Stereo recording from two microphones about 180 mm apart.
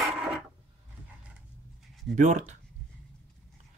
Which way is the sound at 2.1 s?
40° right (ahead or behind).